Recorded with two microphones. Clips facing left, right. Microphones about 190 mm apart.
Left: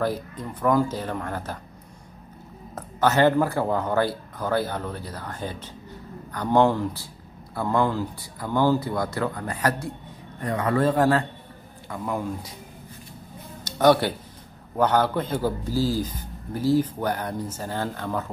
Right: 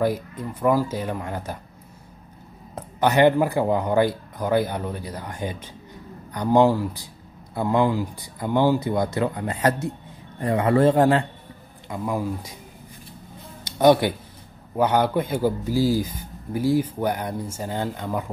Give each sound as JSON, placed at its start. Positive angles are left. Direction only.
{"t": 0.0, "sound": "speech", "side_deg": -10}
{"t": 2.7, "sound": "speech", "side_deg": -15}
{"t": 12.0, "sound": "speech", "side_deg": -5}
{"t": 13.7, "sound": "speech", "side_deg": -10}